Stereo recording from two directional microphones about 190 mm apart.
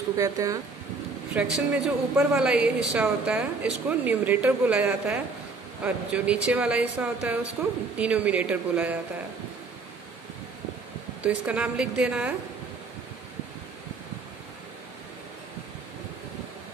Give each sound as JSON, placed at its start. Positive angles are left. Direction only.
{"t": 0.2, "sound": "a woman's voice", "side_deg": -15}
{"t": 1.3, "sound": "a woman's voice", "side_deg": -5}
{"t": 11.2, "sound": "a woman's voice", "side_deg": -5}